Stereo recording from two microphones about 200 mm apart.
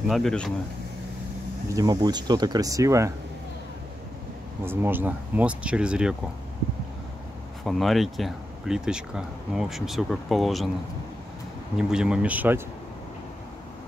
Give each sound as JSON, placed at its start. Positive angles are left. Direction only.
{"t": 0.1, "sound": "speech", "side_deg": 5}
{"t": 1.7, "sound": "speech", "side_deg": -20}
{"t": 4.6, "sound": "speech", "side_deg": -10}
{"t": 7.6, "sound": "speech", "side_deg": 0}
{"t": 11.9, "sound": "speech", "side_deg": -5}